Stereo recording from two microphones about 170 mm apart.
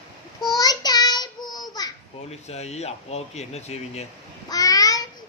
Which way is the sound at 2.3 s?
40° left (ahead or behind).